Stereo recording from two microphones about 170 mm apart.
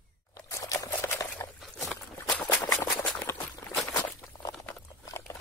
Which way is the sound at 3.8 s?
15° left (ahead or behind).